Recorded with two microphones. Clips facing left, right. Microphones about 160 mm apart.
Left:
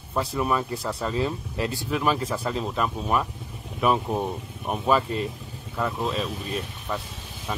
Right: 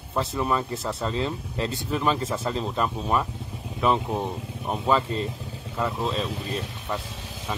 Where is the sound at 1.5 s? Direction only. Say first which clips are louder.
Even; 25° right (ahead or behind).